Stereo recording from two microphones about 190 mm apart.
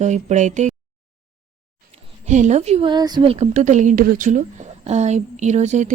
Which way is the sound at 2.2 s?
40° right (ahead or behind).